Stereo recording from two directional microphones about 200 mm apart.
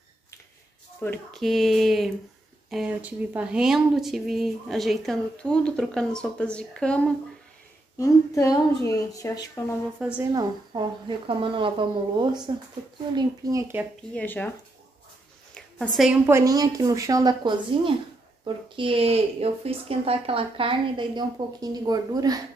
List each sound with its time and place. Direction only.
1.0 s speech: 5° left (ahead or behind)
8.0 s speech: 15° left (ahead or behind)
9.9 s speech: 5° right (ahead or behind)
10.3 s speech: 20° right (ahead or behind)
14.1 s speech: 10° left (ahead or behind)
15.5 s a sound: 5° left (ahead or behind)
16.3 s speech: 15° right (ahead or behind)